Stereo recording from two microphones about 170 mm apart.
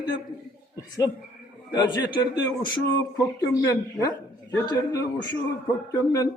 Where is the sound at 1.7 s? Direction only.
25° left (ahead or behind).